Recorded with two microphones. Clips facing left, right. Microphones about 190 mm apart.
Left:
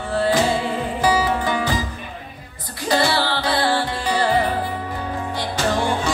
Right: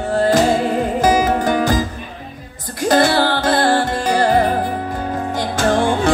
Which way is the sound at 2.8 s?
50° right (ahead or behind).